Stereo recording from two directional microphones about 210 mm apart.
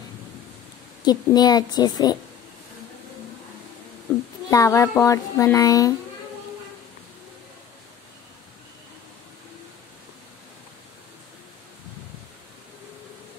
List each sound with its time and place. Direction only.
1.0 s a woman's voice: 20° left (ahead or behind)
4.5 s a child's voice: 15° left (ahead or behind)